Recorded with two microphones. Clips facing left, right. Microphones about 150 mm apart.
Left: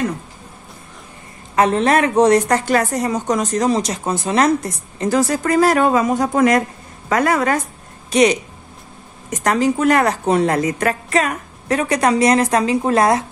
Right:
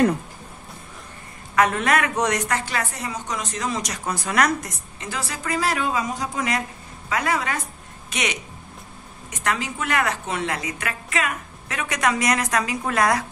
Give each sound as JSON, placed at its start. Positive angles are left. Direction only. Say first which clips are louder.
{"t": 1.5, "sound": "a woman's voice", "louder": "left 5 dB", "side_deg": 30}
{"t": 8.1, "sound": "a woman's voice", "louder": "left 14 dB", "side_deg": 35}